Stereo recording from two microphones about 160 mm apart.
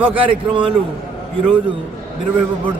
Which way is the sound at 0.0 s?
10° right (ahead or behind).